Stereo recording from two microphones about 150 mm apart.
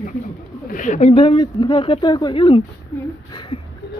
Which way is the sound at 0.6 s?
60° left (ahead or behind).